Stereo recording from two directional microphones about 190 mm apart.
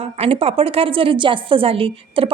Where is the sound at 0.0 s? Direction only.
30° right (ahead or behind).